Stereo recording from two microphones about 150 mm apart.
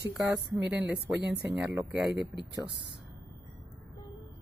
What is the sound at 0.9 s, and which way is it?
Speech, 90° right.